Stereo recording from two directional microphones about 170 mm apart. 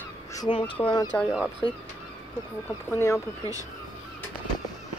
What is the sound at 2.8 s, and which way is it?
Speech, 15° left (ahead or behind).